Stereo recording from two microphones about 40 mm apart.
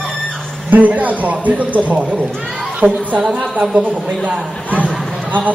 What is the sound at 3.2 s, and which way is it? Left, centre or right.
Speech, centre.